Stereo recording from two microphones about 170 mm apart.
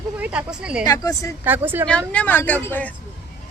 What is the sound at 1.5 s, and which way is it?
Speech, 10° right (ahead or behind).